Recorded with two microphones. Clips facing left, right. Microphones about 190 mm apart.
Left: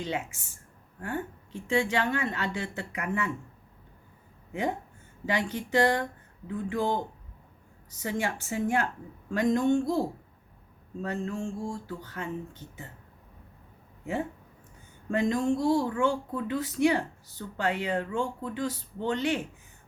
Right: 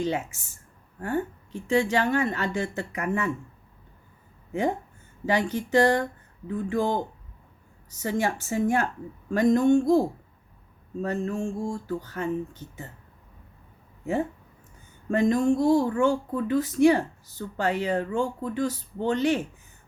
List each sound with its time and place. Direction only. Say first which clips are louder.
0.0 s speech: right 5 dB; 40° right (ahead or behind)
1.6 s speech: right 4 dB; 40° right (ahead or behind)
5.2 s speech: right 5 dB; 40° right (ahead or behind)
15.1 s speech: right 4 dB; 45° right (ahead or behind)